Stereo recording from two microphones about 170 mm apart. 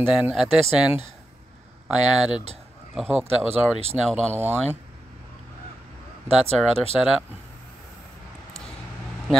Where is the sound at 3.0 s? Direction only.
10° right (ahead or behind).